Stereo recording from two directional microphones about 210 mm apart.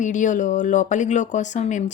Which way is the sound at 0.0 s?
35° left (ahead or behind).